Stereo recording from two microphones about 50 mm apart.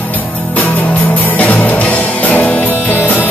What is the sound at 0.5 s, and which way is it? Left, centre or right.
Music, left.